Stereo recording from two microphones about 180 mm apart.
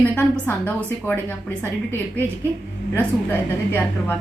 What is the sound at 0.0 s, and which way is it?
A woman's voice, 10° left (ahead or behind).